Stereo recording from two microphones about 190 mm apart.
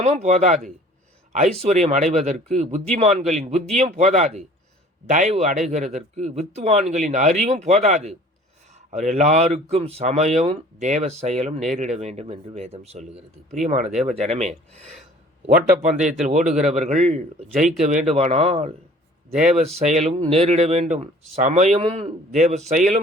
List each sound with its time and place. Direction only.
0.0 s speech: 35° right (ahead or behind)
19.7 s speech: 35° right (ahead or behind)